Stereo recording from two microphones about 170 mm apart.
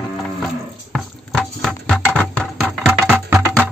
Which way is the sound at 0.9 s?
5° left (ahead or behind).